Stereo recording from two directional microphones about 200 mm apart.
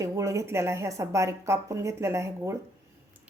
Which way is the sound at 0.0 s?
15° right (ahead or behind).